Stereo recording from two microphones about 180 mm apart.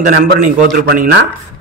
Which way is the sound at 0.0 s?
45° right (ahead or behind).